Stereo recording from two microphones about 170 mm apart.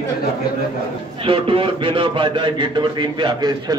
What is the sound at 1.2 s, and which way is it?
A man's voice, 30° right (ahead or behind).